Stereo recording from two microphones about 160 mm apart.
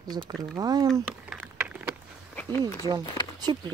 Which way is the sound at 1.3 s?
5° right (ahead or behind).